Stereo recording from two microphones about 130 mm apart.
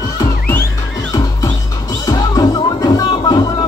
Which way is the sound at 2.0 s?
25° left (ahead or behind).